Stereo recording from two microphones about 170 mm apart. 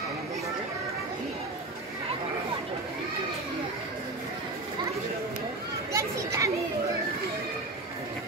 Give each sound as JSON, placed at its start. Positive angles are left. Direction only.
{"t": 5.9, "sound": "children playing", "side_deg": -20}